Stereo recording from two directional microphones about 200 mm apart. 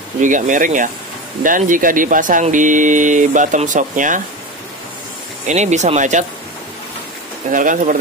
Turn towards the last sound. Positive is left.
turn(degrees=-40)  # may be behind; listen again after turning